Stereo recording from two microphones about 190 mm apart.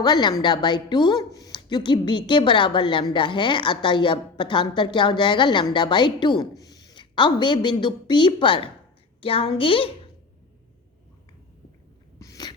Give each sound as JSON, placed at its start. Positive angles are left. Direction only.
{"t": 0.0, "sound": "a woman's voice", "side_deg": 25}
{"t": 12.2, "sound": "sneeze", "side_deg": 20}